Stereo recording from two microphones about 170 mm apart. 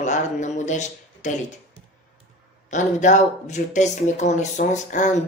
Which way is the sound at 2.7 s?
45° left (ahead or behind).